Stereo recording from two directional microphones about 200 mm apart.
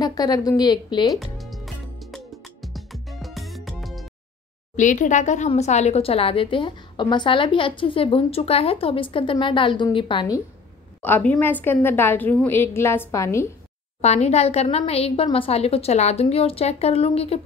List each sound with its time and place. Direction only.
0.0 s speech: 20° left (ahead or behind)
1.1 s music: centre (ahead or behind)
4.7 s speech: 40° left (ahead or behind); by 10.4 s 20° left (ahead or behind)
11.0 s a woman's voice: 10° left (ahead or behind)
14.0 s a woman's voice: 35° left (ahead or behind)